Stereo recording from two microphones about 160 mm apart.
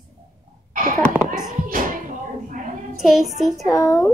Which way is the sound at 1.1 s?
5° right (ahead or behind).